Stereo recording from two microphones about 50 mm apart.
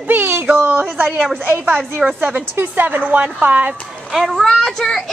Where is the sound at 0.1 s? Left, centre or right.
Right.